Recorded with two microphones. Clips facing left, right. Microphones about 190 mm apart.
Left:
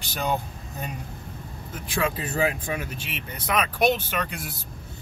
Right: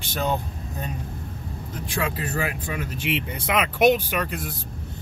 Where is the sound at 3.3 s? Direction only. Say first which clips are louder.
Left 3 dB; 20° right (ahead or behind); by 4.5 s centre (ahead or behind).